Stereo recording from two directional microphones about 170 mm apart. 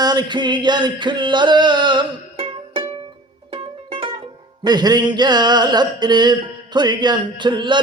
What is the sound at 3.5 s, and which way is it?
Music, 30° right (ahead or behind).